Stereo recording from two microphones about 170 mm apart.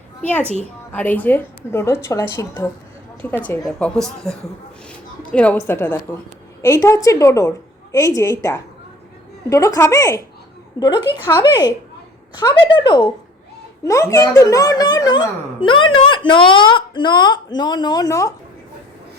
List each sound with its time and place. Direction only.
0.2 s a woman's voice: 10° left (ahead or behind)